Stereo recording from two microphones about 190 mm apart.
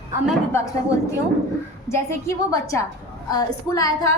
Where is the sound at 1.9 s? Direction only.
15° left (ahead or behind).